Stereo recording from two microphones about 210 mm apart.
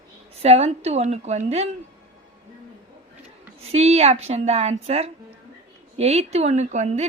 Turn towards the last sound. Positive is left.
turn(degrees=-35)  # may be behind; listen again after turning